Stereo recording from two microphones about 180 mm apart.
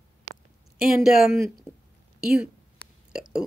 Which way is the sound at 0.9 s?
Centre (ahead or behind).